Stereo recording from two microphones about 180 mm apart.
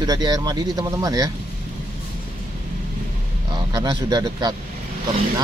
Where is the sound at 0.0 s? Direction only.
20° right (ahead or behind).